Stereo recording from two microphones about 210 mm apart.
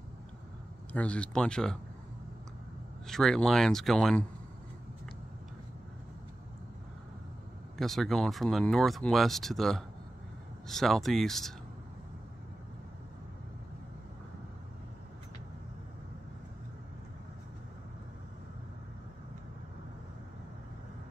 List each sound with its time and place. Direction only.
0.9 s speech: 5° left (ahead or behind)
3.1 s speech: centre (ahead or behind)
7.7 s speech: centre (ahead or behind)